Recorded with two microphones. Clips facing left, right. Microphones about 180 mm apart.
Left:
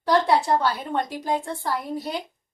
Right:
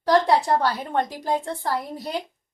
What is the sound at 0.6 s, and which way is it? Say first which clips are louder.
A woman's voice: right 1 dB; 35° right (ahead or behind).